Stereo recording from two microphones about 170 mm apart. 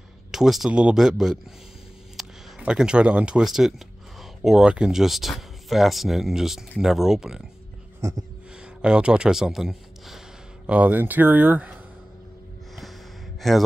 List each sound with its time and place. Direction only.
0.3 s speech: centre (ahead or behind)
8.0 s speech: 20° right (ahead or behind)
8.8 s a man's voice: 5° right (ahead or behind)
13.4 s speech: centre (ahead or behind)